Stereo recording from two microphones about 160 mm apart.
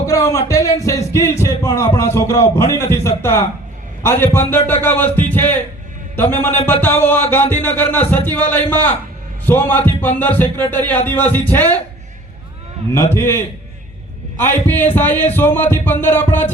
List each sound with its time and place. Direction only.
0.0 s speech: 20° left (ahead or behind)
13.1 s speech: 15° left (ahead or behind)